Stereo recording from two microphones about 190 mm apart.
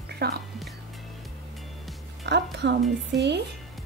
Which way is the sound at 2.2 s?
65° right (ahead or behind).